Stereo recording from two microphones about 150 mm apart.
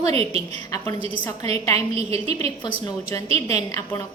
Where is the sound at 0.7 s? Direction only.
25° left (ahead or behind).